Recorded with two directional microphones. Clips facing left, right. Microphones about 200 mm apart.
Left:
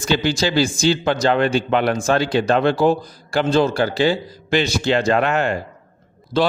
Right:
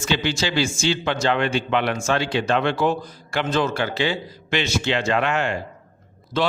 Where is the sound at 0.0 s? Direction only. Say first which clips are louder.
Left 4 dB; 35° left (ahead or behind).